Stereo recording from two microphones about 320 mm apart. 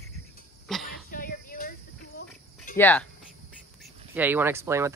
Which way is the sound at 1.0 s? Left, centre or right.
Left.